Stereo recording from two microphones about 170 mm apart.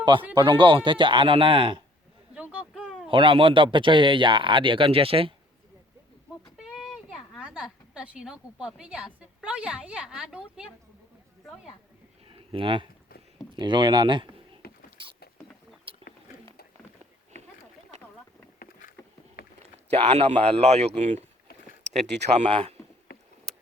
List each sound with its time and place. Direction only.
0.0 s speech: 30° right (ahead or behind)
2.3 s a sound: 5° right (ahead or behind)
3.1 s speech: 30° right (ahead or behind)
6.6 s a woman's voice: 5° right (ahead or behind)
12.3 s speech: 30° right (ahead or behind)
15.9 s a sound: 30° right (ahead or behind)
19.9 s a man's voice: 40° right (ahead or behind)
22.0 s speech: 90° right
22.3 s a man's voice: 35° right (ahead or behind)
23.1 s rowboat: 65° left (ahead or behind)